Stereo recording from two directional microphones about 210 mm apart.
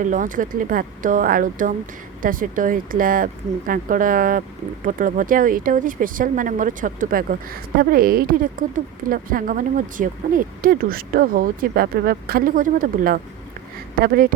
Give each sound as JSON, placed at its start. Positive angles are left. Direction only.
{"t": 0.0, "sound": "speech", "side_deg": -40}